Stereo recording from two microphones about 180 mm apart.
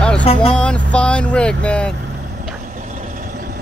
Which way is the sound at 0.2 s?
35° left (ahead or behind).